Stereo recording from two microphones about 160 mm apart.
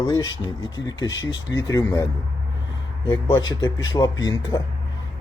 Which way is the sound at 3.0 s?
30° left (ahead or behind).